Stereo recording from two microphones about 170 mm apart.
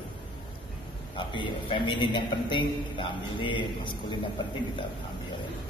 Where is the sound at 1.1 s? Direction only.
30° left (ahead or behind).